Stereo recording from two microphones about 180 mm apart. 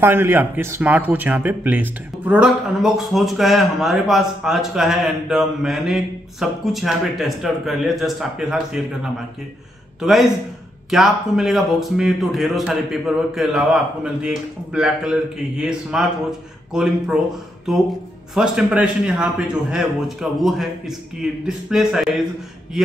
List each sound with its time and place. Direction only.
0.0 s a man's voice: 10° right (ahead or behind)
18.3 s speech: centre (ahead or behind)